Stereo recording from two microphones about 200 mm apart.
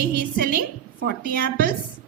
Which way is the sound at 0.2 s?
50° right (ahead or behind).